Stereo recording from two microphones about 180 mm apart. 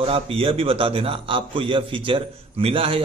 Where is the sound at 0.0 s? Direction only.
30° right (ahead or behind).